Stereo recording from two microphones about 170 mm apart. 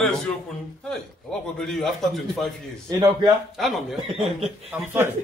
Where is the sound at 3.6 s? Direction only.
Centre (ahead or behind).